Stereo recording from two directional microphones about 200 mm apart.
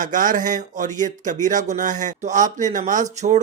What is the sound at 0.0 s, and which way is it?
Speech, 40° right (ahead or behind).